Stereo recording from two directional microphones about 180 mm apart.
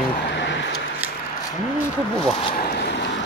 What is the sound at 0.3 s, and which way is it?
Vehicle, 80° left.